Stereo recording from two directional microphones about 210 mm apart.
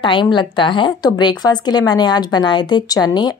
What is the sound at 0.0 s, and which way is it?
Speech, 20° left (ahead or behind).